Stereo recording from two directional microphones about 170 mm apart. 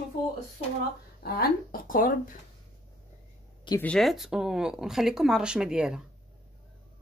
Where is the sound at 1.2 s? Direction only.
60° left (ahead or behind).